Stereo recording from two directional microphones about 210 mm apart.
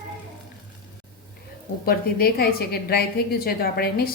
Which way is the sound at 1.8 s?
45° left (ahead or behind).